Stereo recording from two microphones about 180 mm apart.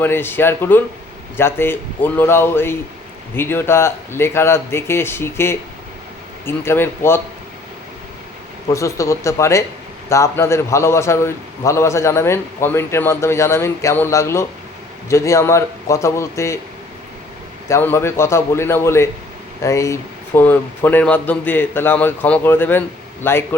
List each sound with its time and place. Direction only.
0.0 s a man's voice: 10° left (ahead or behind)
8.7 s a man's voice: 15° left (ahead or behind)
17.7 s a man's voice: 15° left (ahead or behind)